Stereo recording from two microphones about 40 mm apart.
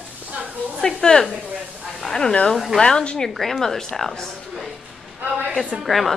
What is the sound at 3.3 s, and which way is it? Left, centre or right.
A woman's voice, centre.